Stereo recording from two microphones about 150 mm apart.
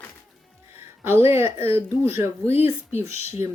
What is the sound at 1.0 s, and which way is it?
Speech, 15° right (ahead or behind).